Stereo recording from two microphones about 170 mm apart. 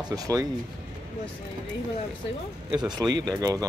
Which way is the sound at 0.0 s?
20° right (ahead or behind).